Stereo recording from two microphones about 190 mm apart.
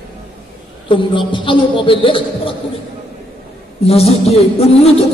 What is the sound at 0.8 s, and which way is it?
A man's voice, 25° left (ahead or behind).